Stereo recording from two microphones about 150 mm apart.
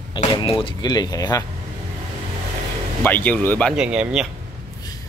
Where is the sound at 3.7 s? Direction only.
5° right (ahead or behind).